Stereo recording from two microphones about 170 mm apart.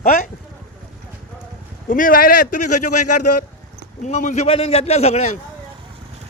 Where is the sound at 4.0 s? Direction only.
45° left (ahead or behind).